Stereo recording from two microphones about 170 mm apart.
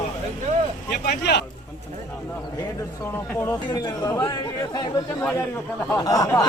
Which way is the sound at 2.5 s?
20° left (ahead or behind).